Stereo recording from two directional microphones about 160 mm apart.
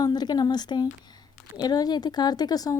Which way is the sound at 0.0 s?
25° left (ahead or behind).